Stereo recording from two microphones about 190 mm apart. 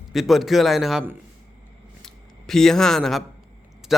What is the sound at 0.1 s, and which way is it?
Speech, centre (ahead or behind).